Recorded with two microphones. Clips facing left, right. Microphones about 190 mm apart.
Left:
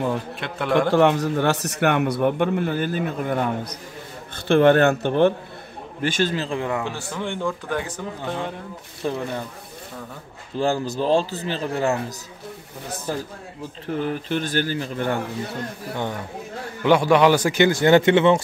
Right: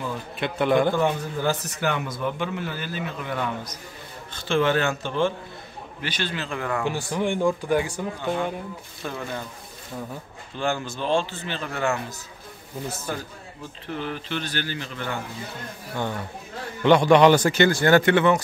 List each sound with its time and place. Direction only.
0.4 s a man's voice: centre (ahead or behind)
0.7 s a man's voice: 75° left (ahead or behind); by 3.7 s 45° left (ahead or behind)
4.4 s a man's voice: 55° left (ahead or behind)
6.0 s a man's voice: 45° left (ahead or behind); by 6.9 s 20° left (ahead or behind)
6.9 s speech: 15° right (ahead or behind)
9.0 s speech: 30° left (ahead or behind)
10.6 s a man's voice: 35° left (ahead or behind)
13.8 s a man's voice: 45° left (ahead or behind)
16.8 s speech: 5° left (ahead or behind); by 18.4 s 25° left (ahead or behind)